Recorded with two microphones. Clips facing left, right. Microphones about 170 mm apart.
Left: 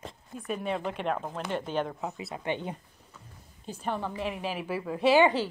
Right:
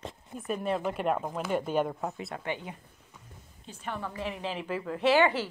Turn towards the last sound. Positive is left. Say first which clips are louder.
# left 2 dB
turn(degrees=15)  # may be behind; listen again after turning